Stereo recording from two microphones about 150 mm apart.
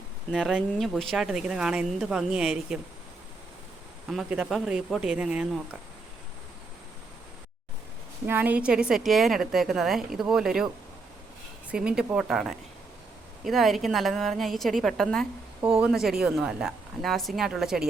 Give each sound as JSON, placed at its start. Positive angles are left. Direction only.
{"t": 0.3, "sound": "a woman's voice", "side_deg": 0}
{"t": 4.1, "sound": "a woman's voice", "side_deg": -5}
{"t": 8.3, "sound": "a woman's voice", "side_deg": -10}
{"t": 11.7, "sound": "a woman's voice", "side_deg": -5}